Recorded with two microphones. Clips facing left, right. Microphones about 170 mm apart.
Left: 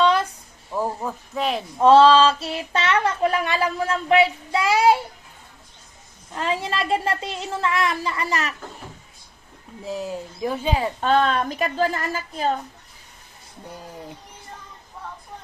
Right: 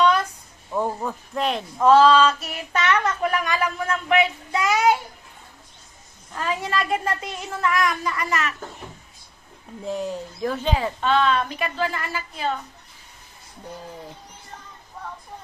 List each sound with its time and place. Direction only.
0.0 s a sound: 30° left (ahead or behind)
0.7 s a sound: centre (ahead or behind)
1.8 s child singing: 30° left (ahead or behind)
6.3 s child singing: 25° left (ahead or behind)
9.8 s speech: 5° left (ahead or behind)
11.0 s a woman's voice: 45° left (ahead or behind)